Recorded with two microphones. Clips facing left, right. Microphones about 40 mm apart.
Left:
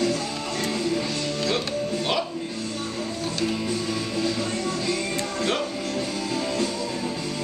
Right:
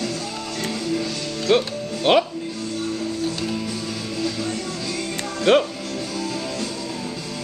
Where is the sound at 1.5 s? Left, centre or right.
Right.